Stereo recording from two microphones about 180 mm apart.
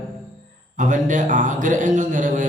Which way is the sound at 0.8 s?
45° right (ahead or behind).